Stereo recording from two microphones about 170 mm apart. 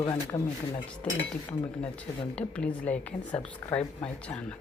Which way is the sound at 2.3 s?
5° left (ahead or behind).